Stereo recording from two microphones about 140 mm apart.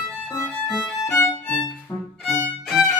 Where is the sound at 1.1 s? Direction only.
20° left (ahead or behind).